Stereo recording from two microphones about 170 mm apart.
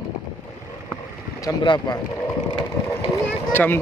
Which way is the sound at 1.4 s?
25° left (ahead or behind).